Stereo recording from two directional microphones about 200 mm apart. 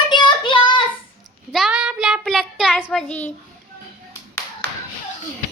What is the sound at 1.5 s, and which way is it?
Child singing, centre (ahead or behind).